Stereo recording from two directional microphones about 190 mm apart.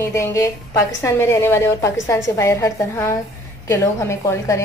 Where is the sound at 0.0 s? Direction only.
15° left (ahead or behind).